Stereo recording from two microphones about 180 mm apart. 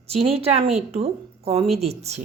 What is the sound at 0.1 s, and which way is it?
Speech, 35° right (ahead or behind).